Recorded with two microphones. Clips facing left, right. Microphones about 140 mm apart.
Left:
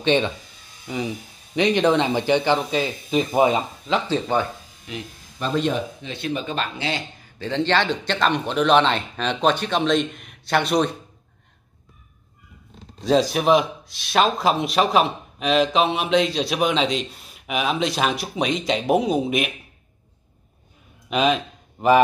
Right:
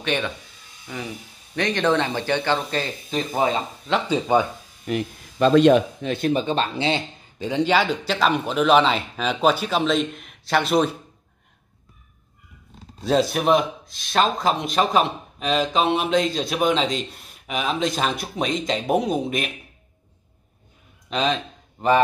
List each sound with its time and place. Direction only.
0.0 s speech: 25° left (ahead or behind)
4.1 s speech: 15° right (ahead or behind)
4.9 s speech: 50° right (ahead or behind)
5.4 s speech: 90° right
6.0 s speech: 45° right (ahead or behind)
6.4 s speech: 30° right (ahead or behind)
7.3 s speech: 15° right (ahead or behind)
13.0 s speech: centre (ahead or behind)
21.1 s speech: 10° left (ahead or behind)